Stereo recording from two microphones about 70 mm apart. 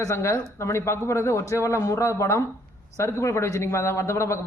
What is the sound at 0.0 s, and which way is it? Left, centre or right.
A man's voice, left.